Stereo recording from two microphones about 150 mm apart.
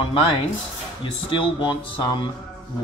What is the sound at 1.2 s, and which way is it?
Speech, 35° left (ahead or behind).